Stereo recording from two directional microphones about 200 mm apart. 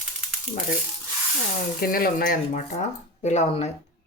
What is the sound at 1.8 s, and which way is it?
Speech, 50° left (ahead or behind).